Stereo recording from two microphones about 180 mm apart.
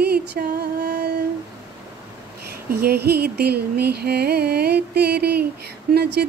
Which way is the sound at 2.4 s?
60° right (ahead or behind).